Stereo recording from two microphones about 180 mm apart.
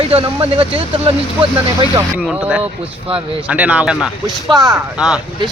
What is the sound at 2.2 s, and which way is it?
Speech, 5° right (ahead or behind).